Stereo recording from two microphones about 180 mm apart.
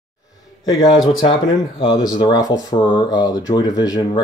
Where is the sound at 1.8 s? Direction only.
25° left (ahead or behind).